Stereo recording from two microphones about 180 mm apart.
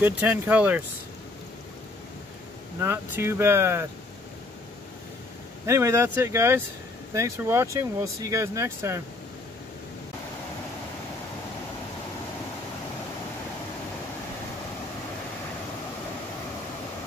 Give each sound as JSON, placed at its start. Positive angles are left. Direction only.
{"t": 0.0, "sound": "speech", "side_deg": -10}
{"t": 2.8, "sound": "speech", "side_deg": -15}
{"t": 5.7, "sound": "speech", "side_deg": -15}